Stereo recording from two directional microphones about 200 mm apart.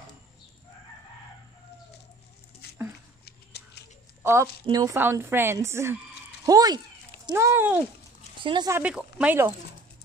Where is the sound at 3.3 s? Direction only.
55° left (ahead or behind).